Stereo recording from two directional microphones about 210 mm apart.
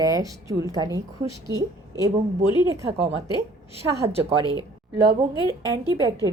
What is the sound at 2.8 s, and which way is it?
Speech, 25° right (ahead or behind).